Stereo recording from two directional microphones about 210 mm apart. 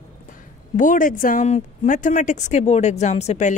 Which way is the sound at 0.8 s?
40° left (ahead or behind).